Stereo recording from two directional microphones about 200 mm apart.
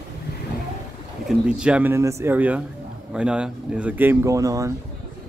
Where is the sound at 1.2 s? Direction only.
5° right (ahead or behind).